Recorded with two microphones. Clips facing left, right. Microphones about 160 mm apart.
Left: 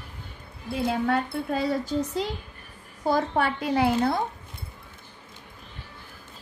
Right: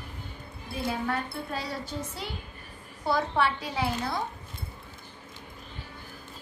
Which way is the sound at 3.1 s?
50° left (ahead or behind).